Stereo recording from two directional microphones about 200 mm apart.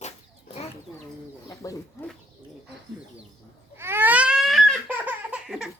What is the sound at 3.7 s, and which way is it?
Babbling, 10° right (ahead or behind).